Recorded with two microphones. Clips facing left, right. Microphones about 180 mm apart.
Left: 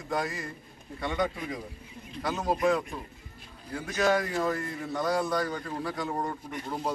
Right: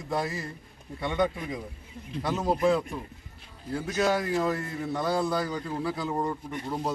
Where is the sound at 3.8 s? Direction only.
5° right (ahead or behind).